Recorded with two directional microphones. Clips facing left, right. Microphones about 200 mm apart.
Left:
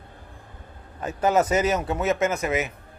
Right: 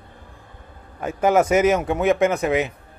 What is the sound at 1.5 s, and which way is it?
Speech, 25° right (ahead or behind).